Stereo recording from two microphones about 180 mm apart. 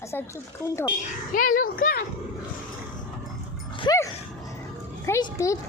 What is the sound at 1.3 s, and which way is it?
Speech, 50° left (ahead or behind).